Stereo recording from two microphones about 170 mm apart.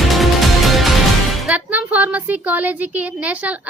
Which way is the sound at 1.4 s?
5° right (ahead or behind).